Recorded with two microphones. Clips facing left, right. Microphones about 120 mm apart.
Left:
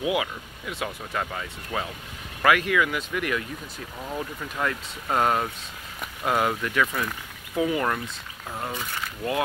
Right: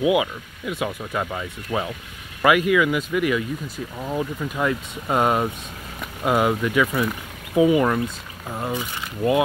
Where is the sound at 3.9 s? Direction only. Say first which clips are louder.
Right 6 dB; 20° right (ahead or behind).